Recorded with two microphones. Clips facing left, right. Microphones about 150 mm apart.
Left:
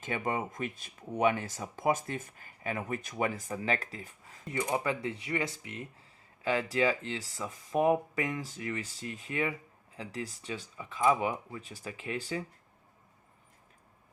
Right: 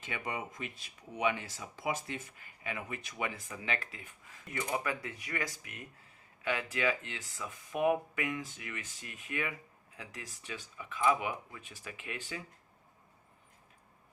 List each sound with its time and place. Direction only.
0.0 s speech: 45° left (ahead or behind)